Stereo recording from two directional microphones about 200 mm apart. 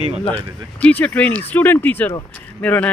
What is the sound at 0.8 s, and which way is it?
Speech, 5° left (ahead or behind).